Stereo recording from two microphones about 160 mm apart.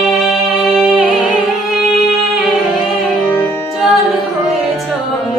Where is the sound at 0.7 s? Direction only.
Centre (ahead or behind).